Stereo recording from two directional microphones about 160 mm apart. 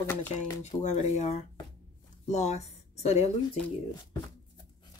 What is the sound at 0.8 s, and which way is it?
Speech, 45° left (ahead or behind).